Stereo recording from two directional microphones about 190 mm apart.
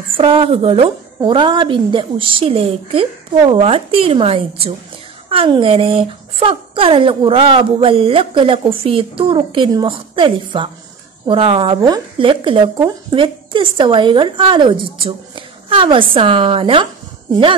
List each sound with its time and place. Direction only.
0.1 s a woman's voice: 30° right (ahead or behind)